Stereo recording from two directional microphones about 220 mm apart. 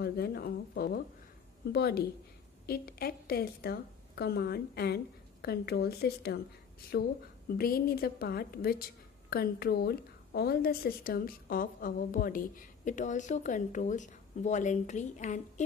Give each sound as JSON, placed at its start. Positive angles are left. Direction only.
{"t": 0.0, "sound": "a woman's voice", "side_deg": 45}